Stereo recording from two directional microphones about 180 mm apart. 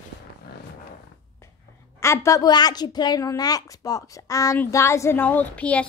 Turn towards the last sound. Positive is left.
turn(degrees=5)  # may be behind; listen again after turning